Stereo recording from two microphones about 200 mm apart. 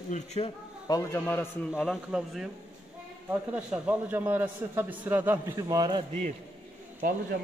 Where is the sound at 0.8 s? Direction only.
15° left (ahead or behind).